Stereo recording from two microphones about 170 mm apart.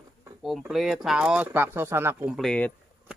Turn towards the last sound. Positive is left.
turn(degrees=5)  # may be behind; listen again after turning